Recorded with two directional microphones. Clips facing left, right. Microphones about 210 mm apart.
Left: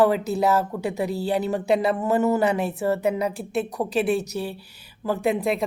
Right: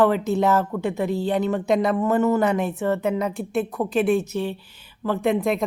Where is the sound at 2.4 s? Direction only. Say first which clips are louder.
Right 1 dB; 35° left (ahead or behind).